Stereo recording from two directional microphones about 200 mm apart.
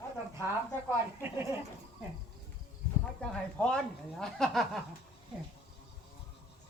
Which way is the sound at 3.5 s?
5° left (ahead or behind).